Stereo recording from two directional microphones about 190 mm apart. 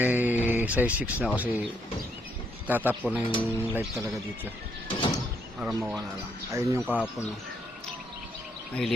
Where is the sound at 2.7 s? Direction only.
10° right (ahead or behind).